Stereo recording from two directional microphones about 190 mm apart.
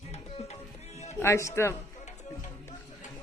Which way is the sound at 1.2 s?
15° left (ahead or behind).